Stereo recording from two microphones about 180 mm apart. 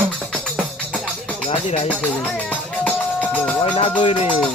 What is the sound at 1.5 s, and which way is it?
Speech, 35° left (ahead or behind).